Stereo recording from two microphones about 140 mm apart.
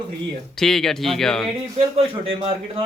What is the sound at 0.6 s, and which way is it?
Speech, centre (ahead or behind).